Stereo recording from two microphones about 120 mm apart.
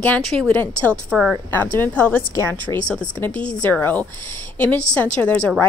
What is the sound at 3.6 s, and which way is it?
Speech, 15° left (ahead or behind).